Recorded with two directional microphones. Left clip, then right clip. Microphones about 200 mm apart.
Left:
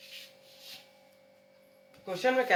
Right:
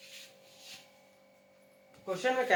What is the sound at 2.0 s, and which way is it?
Speech, 45° left (ahead or behind).